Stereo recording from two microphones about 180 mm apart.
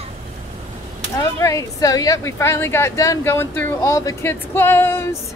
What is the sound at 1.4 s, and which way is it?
A woman's voice, 20° left (ahead or behind).